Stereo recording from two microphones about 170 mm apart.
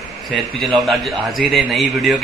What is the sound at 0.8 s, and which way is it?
A man's voice, centre (ahead or behind).